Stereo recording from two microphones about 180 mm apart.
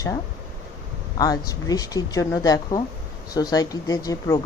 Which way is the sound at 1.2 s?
20° left (ahead or behind).